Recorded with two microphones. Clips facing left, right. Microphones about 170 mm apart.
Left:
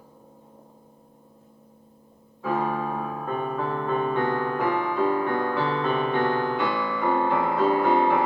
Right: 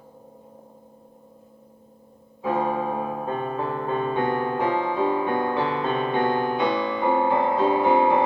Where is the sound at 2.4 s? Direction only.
20° right (ahead or behind).